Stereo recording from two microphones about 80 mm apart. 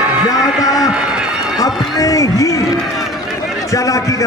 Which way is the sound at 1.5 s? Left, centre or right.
Left.